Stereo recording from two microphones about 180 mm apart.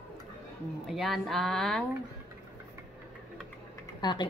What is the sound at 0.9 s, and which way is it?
Speech, centre (ahead or behind).